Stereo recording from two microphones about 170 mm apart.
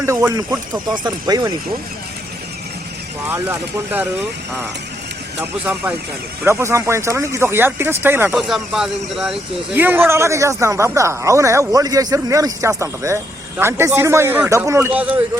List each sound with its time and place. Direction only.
0.0 s speech: 15° right (ahead or behind)
3.2 s speech: 10° right (ahead or behind)
5.4 s speech: 10° right (ahead or behind)
8.4 s speech: centre (ahead or behind)